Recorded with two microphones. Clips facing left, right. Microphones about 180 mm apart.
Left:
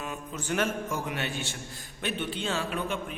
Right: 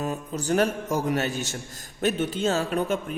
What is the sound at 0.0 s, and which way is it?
A man's voice, 35° right (ahead or behind).